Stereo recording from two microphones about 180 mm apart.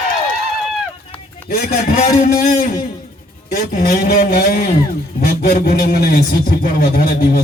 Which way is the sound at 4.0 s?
60° left (ahead or behind).